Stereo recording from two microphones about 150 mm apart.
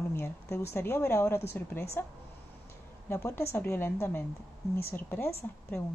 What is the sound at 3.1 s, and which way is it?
Speech, 20° left (ahead or behind).